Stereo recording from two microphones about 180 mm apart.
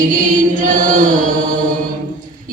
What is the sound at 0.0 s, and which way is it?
Chant, 45° right (ahead or behind).